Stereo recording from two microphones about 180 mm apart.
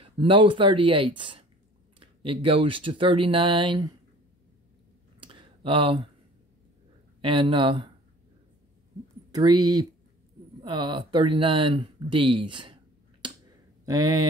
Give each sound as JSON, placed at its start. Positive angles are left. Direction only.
{"t": 0.0, "sound": "speech", "side_deg": -30}
{"t": 5.2, "sound": "a sound", "side_deg": -30}
{"t": 7.2, "sound": "speech", "side_deg": -30}
{"t": 9.3, "sound": "speech", "side_deg": -25}
{"t": 13.2, "sound": "finger snapping", "side_deg": -25}
{"t": 13.8, "sound": "speech", "side_deg": -20}